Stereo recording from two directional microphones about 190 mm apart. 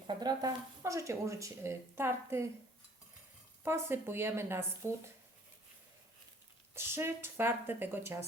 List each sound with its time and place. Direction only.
0.1 s speech: 20° right (ahead or behind)
3.6 s speech: 10° right (ahead or behind)
6.7 s speech: 10° right (ahead or behind)